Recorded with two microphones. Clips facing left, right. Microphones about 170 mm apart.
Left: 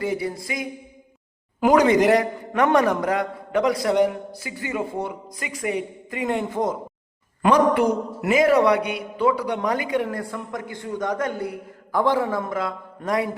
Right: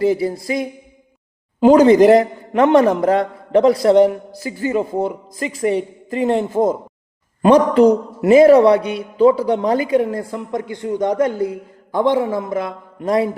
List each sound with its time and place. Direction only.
0.0 s a man's voice: 25° right (ahead or behind)